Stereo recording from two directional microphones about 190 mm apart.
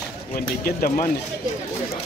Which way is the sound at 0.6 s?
45° left (ahead or behind).